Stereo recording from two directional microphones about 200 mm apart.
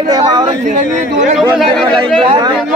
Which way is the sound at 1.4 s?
5° left (ahead or behind).